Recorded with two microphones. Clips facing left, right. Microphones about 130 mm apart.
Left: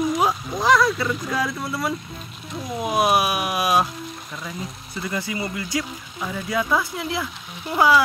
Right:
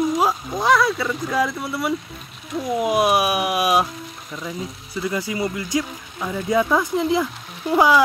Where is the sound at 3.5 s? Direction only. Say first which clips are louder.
Right 1 dB; 10° right (ahead or behind).